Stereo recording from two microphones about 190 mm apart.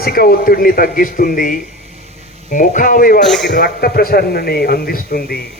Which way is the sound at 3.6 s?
55° left (ahead or behind).